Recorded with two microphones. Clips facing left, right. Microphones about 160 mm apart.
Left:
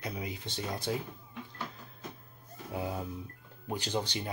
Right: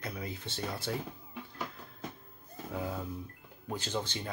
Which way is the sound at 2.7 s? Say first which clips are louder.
Left 1 dB; 15° left (ahead or behind).